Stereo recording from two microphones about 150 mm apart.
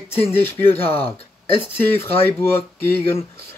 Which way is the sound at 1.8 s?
15° left (ahead or behind).